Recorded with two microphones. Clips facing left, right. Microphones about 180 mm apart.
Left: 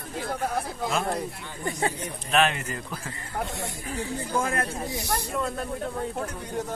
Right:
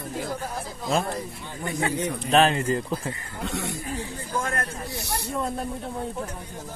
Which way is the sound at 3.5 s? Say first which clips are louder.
Right 4 dB; 75° right (ahead or behind).